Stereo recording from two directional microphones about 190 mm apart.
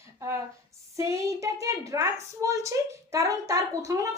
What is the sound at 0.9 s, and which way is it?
A woman's voice, 15° right (ahead or behind).